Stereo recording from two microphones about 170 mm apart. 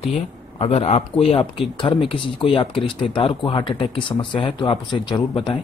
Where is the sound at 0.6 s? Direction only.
35° left (ahead or behind).